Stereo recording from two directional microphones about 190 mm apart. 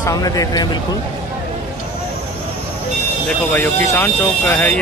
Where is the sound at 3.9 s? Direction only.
10° left (ahead or behind).